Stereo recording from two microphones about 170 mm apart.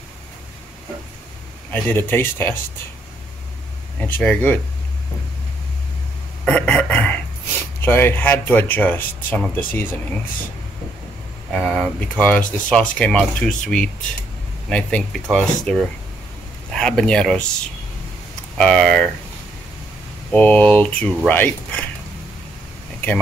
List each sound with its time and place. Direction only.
1.7 s speech: 10° left (ahead or behind)
4.0 s speech: 5° left (ahead or behind)
6.4 s a sound: 5° left (ahead or behind)
7.8 s speech: 10° left (ahead or behind)
11.5 s speech: 5° left (ahead or behind)
18.6 s speech: 5° left (ahead or behind)
20.2 s speech: 10° left (ahead or behind)